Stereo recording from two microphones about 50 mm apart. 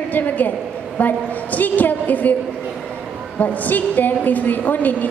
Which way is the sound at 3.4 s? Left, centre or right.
Left.